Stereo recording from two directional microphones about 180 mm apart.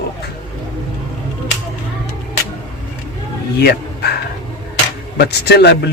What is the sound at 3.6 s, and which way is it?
Speech, 65° left (ahead or behind).